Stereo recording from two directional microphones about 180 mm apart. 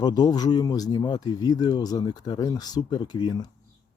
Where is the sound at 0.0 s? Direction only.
20° left (ahead or behind).